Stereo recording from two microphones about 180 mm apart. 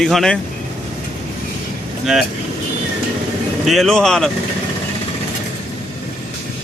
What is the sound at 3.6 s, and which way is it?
Speech, centre (ahead or behind).